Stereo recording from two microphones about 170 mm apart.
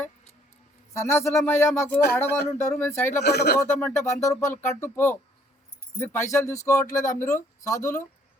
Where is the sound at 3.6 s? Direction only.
15° left (ahead or behind).